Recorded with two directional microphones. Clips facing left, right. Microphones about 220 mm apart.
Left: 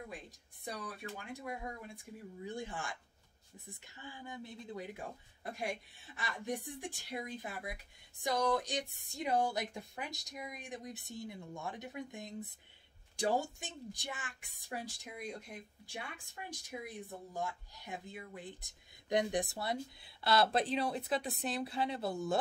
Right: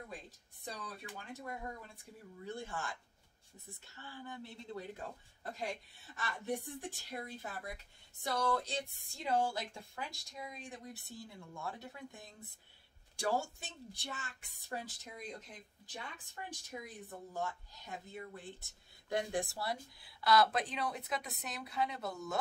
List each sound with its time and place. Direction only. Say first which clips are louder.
0.7 s a woman's voice: left 3 dB; 10° left (ahead or behind); by 22.4 s 30° left (ahead or behind)